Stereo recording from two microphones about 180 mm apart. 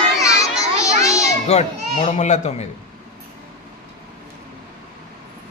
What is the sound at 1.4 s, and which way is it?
Speech, 40° left (ahead or behind).